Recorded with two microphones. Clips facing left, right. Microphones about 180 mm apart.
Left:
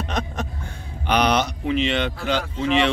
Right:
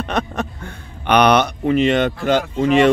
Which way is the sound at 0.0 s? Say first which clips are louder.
Right 5 dB; 60° right (ahead or behind).